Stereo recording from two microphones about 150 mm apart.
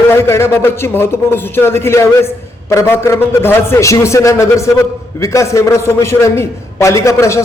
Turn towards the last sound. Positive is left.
turn(degrees=20)  # may be behind; listen again after turning